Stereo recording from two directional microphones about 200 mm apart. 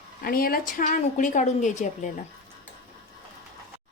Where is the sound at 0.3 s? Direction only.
45° left (ahead or behind).